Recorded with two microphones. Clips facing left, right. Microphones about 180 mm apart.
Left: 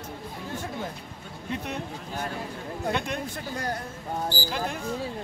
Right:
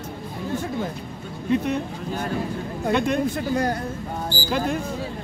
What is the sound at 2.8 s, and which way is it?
Speech, 90° right.